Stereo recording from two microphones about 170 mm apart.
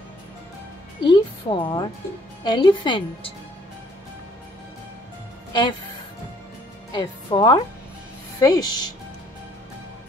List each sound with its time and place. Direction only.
1.0 s a woman's voice: 25° left (ahead or behind)
5.5 s speech: 25° left (ahead or behind)
6.9 s a woman's voice: 25° left (ahead or behind)